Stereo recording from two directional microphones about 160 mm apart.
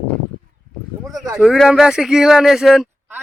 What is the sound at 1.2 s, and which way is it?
Speech, centre (ahead or behind).